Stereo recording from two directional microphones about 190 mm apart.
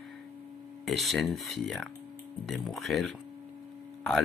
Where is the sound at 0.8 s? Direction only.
Centre (ahead or behind).